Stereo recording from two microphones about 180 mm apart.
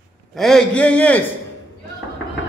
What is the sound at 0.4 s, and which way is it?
Speech, 5° left (ahead or behind).